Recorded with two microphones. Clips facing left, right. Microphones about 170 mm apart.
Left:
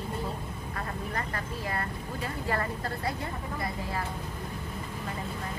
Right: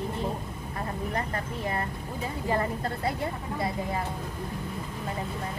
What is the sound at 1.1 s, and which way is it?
Speech, 20° right (ahead or behind).